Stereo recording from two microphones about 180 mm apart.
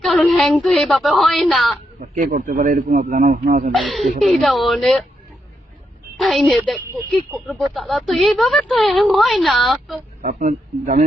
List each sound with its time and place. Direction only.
0.0 s speech: centre (ahead or behind)
2.0 s a man's voice: 45° right (ahead or behind)
4.2 s speech: centre (ahead or behind)
6.2 s speech: centre (ahead or behind)
10.2 s a man's voice: 45° right (ahead or behind)